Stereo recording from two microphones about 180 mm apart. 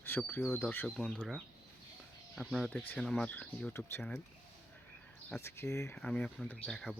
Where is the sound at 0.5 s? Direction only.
10° left (ahead or behind).